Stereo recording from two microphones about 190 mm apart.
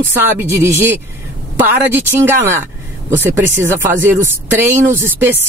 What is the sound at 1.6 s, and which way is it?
Speech, 10° right (ahead or behind).